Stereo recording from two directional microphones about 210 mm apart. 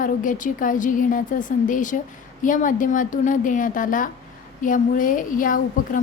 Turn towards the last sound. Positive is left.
turn(degrees=40)  # may be behind; listen again after turning